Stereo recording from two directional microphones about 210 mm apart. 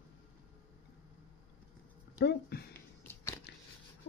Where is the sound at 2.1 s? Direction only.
50° left (ahead or behind).